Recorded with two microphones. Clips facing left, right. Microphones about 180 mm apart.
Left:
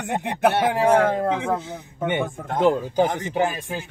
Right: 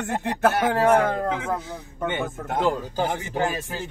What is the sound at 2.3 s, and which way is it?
Speech, 5° right (ahead or behind).